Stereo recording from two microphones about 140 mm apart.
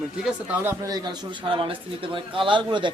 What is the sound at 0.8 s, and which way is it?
Speech, 30° right (ahead or behind).